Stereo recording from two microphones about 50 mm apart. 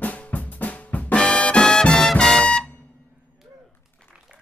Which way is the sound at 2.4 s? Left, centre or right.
Left.